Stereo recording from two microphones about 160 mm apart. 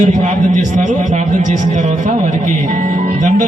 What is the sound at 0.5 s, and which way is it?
Speech, 50° right (ahead or behind).